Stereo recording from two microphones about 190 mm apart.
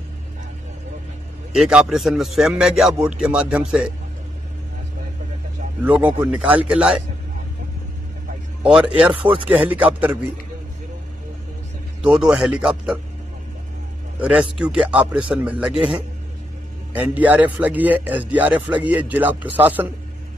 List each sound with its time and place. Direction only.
1.5 s a man's voice: 5° right (ahead or behind)
5.9 s a man's voice: 10° right (ahead or behind)
8.6 s a man's voice: 5° right (ahead or behind)
9.1 s speech: 25° right (ahead or behind)
9.5 s a man's voice: 10° right (ahead or behind)
12.2 s a man's voice: 5° right (ahead or behind)
14.2 s a man's voice: 5° right (ahead or behind)